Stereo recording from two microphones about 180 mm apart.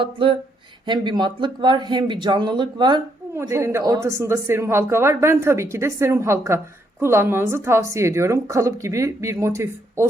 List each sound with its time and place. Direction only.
0.0 s speech: 30° right (ahead or behind)